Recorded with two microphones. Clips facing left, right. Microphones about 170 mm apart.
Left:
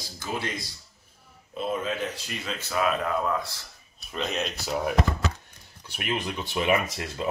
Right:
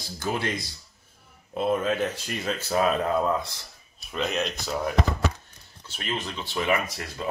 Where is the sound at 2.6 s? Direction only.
35° right (ahead or behind).